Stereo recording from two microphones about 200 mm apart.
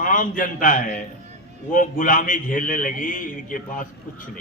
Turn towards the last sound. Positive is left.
turn(degrees=40)  # may be behind; listen again after turning